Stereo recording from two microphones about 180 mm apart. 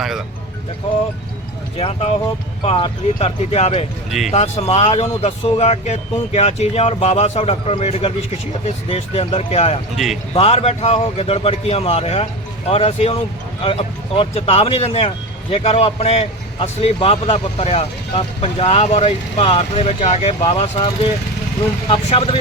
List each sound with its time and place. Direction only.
2.6 s speech: 35° left (ahead or behind)